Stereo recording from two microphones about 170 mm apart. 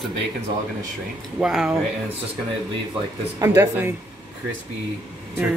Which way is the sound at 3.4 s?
15° right (ahead or behind).